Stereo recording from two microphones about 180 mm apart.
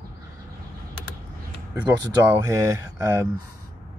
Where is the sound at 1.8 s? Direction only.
15° right (ahead or behind).